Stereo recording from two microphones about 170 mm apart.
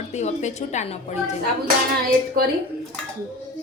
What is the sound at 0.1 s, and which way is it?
A woman's voice, 40° left (ahead or behind).